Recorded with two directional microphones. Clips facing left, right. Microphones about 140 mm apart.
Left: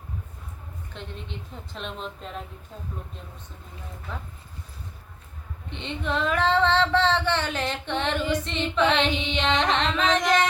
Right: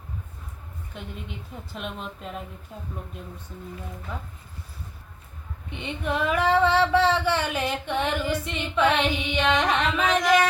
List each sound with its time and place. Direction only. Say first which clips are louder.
0.9 s female singing: right 1 dB; 10° right (ahead or behind)
5.8 s female singing: right 1 dB; 10° right (ahead or behind)
9.1 s carnatic music: right 1 dB; 20° left (ahead or behind)
9.7 s female singing: even; 10° right (ahead or behind)